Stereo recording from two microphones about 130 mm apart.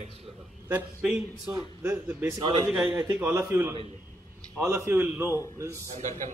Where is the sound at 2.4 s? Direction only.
35° right (ahead or behind).